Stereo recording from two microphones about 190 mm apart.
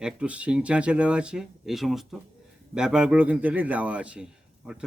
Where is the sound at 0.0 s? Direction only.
5° right (ahead or behind).